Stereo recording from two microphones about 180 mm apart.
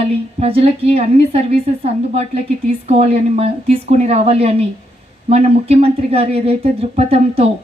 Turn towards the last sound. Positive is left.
turn(degrees=-35)  # may be behind; listen again after turning